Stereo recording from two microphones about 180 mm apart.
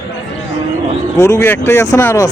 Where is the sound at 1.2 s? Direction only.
15° left (ahead or behind).